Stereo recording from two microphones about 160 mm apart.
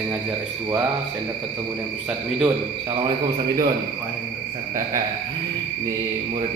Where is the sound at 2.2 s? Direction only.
5° right (ahead or behind).